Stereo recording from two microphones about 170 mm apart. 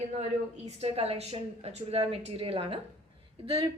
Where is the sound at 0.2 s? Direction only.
40° right (ahead or behind).